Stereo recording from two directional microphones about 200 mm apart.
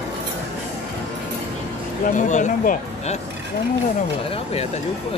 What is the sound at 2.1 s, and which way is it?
Speech, 40° left (ahead or behind).